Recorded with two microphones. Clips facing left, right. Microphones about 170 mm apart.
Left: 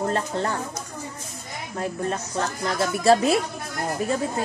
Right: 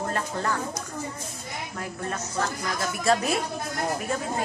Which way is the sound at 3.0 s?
30° left (ahead or behind).